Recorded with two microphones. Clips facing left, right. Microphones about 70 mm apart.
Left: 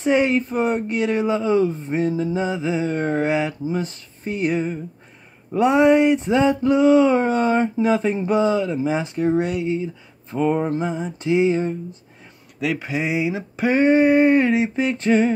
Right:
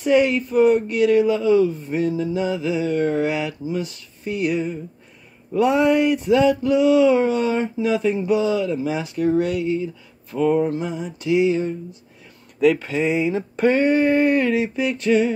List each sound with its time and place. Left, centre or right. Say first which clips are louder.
0.0 s speech: right 1 dB; left
10.3 s mantra: right 1 dB; left
12.7 s a sound: right 2 dB; centre
13.7 s speech: left 5 dB; left